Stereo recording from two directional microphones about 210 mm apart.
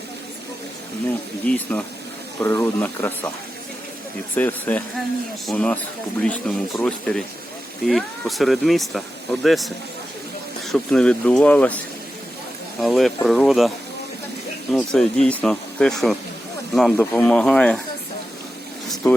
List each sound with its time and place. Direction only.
1.5 s speech: 5° left (ahead or behind)
4.4 s speech: 10° left (ahead or behind)
12.8 s speech: centre (ahead or behind)
19.0 s speech: 15° left (ahead or behind)